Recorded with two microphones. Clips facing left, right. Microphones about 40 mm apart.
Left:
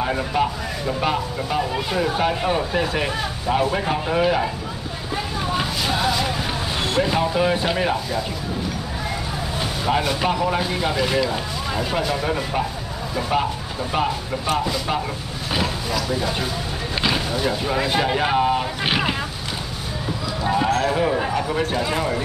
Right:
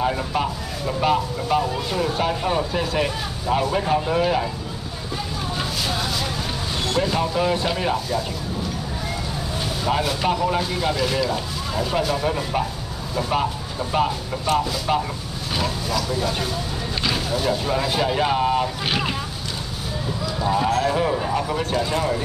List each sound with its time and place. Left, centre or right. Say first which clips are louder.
0.0 s speech: left 1 dB; centre
5.6 s a sound: left 2 dB; centre
6.8 s speech: left 1 dB; left
9.8 s speech: left 1 dB; centre
14.4 s speech: right 2 dB; centre
15.5 s vehicle: left 1 dB; centre
17.3 s speech: even; centre
20.4 s speech: left 1 dB; centre